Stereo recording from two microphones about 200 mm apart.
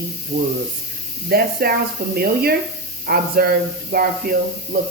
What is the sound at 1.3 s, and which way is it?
Speech, 50° right (ahead or behind).